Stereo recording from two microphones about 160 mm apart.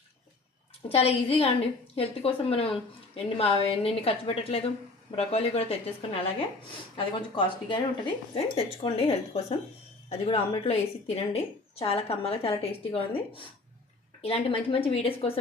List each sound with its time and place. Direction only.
0.9 s a woman's voice: 35° left (ahead or behind)